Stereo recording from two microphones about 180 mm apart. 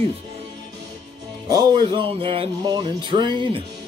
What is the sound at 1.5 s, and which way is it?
Speech, 25° right (ahead or behind).